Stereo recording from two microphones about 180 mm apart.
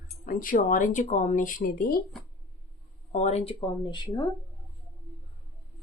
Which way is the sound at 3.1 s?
40° left (ahead or behind).